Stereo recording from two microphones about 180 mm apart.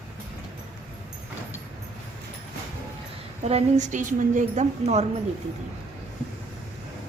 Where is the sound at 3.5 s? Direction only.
40° right (ahead or behind).